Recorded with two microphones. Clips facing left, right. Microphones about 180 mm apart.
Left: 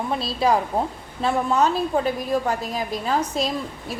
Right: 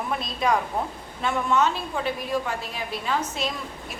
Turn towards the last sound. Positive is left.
turn(degrees=40)  # may be behind; listen again after turning